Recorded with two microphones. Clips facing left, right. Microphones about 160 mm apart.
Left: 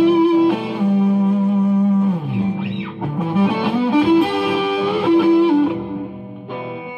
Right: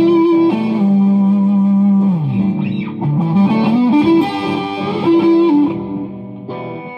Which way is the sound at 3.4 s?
30° right (ahead or behind).